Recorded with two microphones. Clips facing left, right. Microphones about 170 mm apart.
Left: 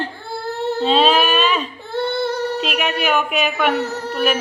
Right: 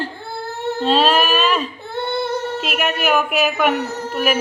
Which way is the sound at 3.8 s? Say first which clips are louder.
Left 2 dB; 20° right (ahead or behind).